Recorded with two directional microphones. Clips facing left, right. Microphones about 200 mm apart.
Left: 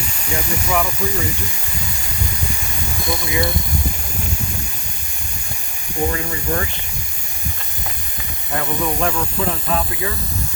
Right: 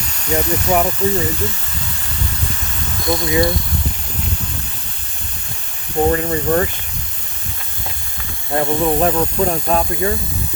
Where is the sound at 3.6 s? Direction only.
10° left (ahead or behind).